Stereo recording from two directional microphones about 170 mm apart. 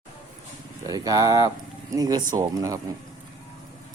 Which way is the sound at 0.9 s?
20° right (ahead or behind).